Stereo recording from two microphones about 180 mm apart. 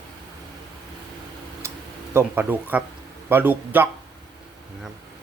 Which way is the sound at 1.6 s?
15° right (ahead or behind).